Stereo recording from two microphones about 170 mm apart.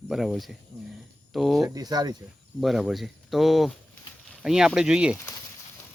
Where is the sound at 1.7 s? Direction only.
25° right (ahead or behind).